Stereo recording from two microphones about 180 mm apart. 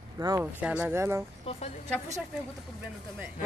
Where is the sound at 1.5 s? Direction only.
30° left (ahead or behind).